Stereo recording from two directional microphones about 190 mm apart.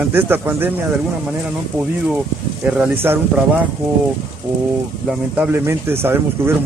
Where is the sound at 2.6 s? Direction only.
5° right (ahead or behind).